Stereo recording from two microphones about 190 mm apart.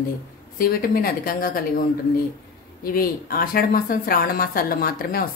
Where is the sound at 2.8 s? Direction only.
50° left (ahead or behind).